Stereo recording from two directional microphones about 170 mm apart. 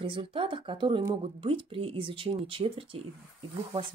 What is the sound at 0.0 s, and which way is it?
Speech, 30° right (ahead or behind).